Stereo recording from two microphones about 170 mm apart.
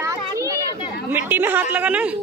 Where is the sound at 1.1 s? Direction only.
10° right (ahead or behind).